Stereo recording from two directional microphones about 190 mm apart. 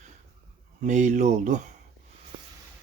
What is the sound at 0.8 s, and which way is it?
Speech, 40° right (ahead or behind).